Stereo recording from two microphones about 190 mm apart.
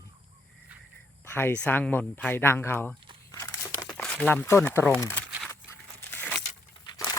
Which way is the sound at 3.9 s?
5° left (ahead or behind).